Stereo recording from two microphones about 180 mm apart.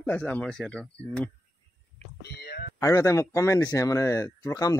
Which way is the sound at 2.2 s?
65° left (ahead or behind).